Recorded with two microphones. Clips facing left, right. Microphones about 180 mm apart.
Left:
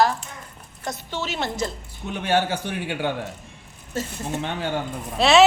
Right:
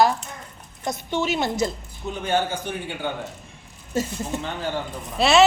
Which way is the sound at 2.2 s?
65° left (ahead or behind).